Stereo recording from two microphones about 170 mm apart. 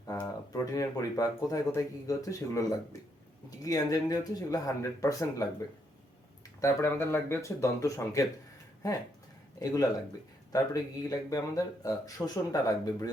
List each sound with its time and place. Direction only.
0.0 s speech: 20° left (ahead or behind)
6.6 s speech: 15° left (ahead or behind)
9.6 s speech: 20° left (ahead or behind)